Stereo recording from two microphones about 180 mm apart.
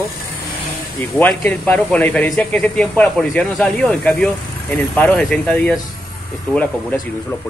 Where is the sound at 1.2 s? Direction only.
10° left (ahead or behind).